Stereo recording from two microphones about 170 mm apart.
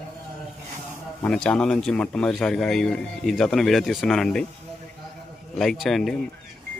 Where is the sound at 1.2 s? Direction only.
5° left (ahead or behind).